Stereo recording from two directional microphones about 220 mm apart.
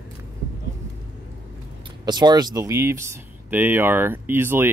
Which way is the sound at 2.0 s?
20° right (ahead or behind).